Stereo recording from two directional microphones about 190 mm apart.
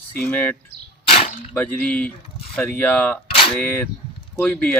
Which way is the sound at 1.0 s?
30° left (ahead or behind).